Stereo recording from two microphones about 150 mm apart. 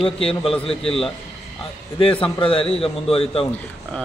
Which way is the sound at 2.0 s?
35° left (ahead or behind).